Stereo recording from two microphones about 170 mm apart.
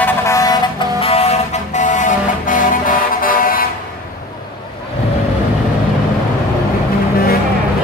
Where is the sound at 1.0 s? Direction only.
35° left (ahead or behind); by 3.6 s 55° left (ahead or behind).